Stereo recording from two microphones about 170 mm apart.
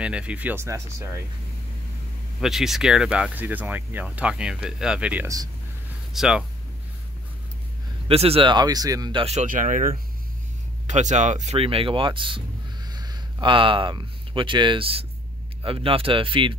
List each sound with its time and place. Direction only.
0.0 s speech: 5° right (ahead or behind)
2.4 s speech: centre (ahead or behind)
8.1 s speech: 35° right (ahead or behind)
9.2 s speech: 40° right (ahead or behind)